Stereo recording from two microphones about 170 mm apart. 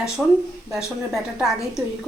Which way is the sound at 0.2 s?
5° left (ahead or behind).